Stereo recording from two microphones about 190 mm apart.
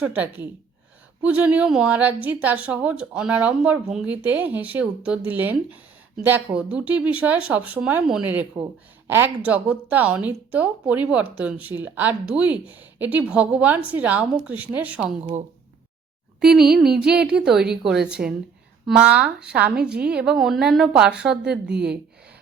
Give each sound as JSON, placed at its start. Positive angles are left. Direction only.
{"t": 0.0, "sound": "a woman's voice", "side_deg": -10}
{"t": 15.2, "sound": "a woman's voice", "side_deg": -30}
{"t": 16.4, "sound": "a woman's voice", "side_deg": -5}